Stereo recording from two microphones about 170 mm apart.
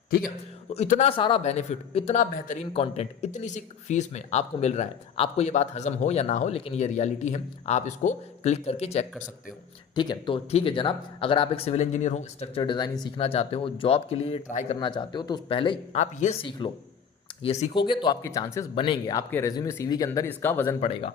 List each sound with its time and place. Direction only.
0.7 s speech: 40° left (ahead or behind)
2.3 s speech: 50° left (ahead or behind)
2.7 s speech: 35° left (ahead or behind)
9.9 s speech: 25° left (ahead or behind)
14.5 s speech: 45° left (ahead or behind)
14.8 s speech: 25° left (ahead or behind)
16.0 s speech: 45° left (ahead or behind)
16.4 s speech: 30° left (ahead or behind)
17.4 s speech: 40° left (ahead or behind)
18.0 s speech: 20° left (ahead or behind)
18.7 s speech: 30° left (ahead or behind); by 20.7 s 15° left (ahead or behind)
20.8 s speech: 30° left (ahead or behind)